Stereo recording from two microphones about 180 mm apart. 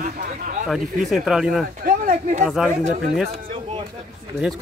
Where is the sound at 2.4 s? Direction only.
5° right (ahead or behind).